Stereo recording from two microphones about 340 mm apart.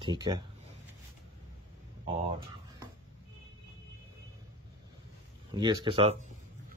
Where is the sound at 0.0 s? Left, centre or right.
Centre.